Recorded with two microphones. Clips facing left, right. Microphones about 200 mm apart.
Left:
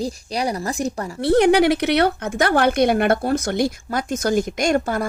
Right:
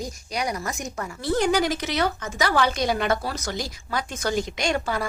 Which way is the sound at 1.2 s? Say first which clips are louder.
Left 8 dB; 65° left (ahead or behind).